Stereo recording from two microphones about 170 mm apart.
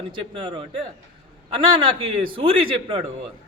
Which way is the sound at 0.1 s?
30° right (ahead or behind).